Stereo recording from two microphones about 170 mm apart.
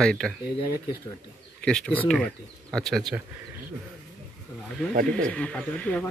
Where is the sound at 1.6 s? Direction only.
5° left (ahead or behind).